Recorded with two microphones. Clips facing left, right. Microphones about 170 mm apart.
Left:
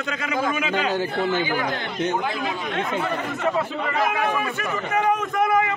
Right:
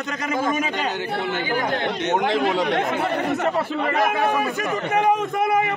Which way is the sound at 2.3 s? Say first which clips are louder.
Right 6 dB; 75° right (ahead or behind).